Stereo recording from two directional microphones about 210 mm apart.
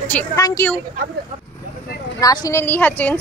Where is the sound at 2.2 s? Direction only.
15° left (ahead or behind).